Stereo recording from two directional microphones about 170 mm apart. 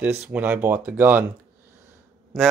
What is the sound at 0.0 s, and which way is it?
Speech, 10° right (ahead or behind).